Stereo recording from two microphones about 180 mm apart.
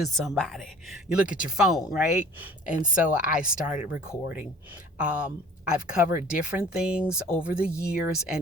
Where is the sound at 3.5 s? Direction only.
10° right (ahead or behind).